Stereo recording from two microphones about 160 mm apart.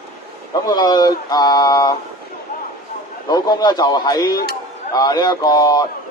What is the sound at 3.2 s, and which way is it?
Speech, 25° left (ahead or behind).